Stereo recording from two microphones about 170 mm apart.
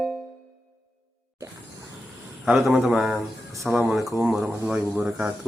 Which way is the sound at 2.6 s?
Centre (ahead or behind).